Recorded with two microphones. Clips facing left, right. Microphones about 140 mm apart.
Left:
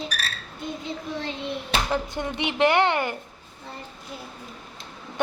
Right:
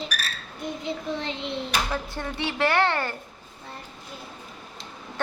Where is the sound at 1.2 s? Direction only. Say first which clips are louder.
Even; 20° right (ahead or behind).